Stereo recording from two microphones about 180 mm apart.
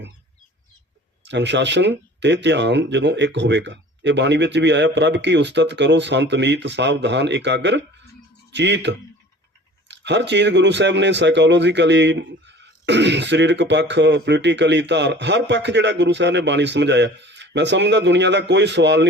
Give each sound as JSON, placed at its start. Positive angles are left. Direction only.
{"t": 1.2, "sound": "speech", "side_deg": -75}